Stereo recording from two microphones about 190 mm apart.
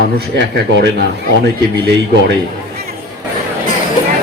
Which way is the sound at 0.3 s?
65° right (ahead or behind).